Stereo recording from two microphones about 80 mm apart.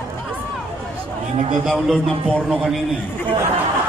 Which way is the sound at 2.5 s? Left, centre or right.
Centre.